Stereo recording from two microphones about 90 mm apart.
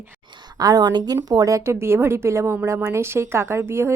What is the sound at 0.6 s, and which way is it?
A woman's voice, 45° right (ahead or behind).